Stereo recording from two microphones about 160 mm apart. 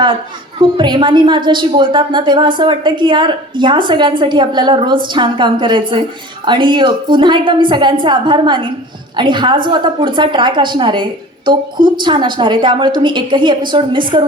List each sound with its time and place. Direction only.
0.8 s a woman's voice: 30° right (ahead or behind)